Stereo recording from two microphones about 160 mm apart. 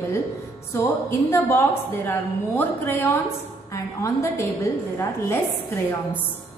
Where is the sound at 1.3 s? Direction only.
15° left (ahead or behind).